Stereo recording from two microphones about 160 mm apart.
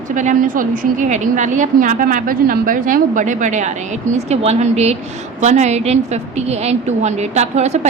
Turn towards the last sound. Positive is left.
turn(degrees=-45)  # may be behind; listen again after turning